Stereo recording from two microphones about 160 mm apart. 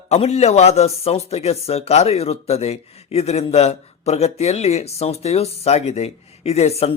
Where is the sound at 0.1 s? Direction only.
45° left (ahead or behind).